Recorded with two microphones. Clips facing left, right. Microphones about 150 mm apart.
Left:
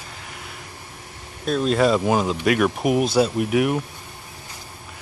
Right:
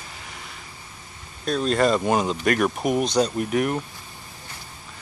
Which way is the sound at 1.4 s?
5° left (ahead or behind).